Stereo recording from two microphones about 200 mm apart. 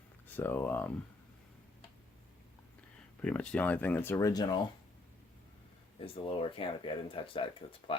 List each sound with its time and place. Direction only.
0.3 s speech: 10° left (ahead or behind)
3.2 s speech: 5° left (ahead or behind)
6.2 s speech: 25° left (ahead or behind)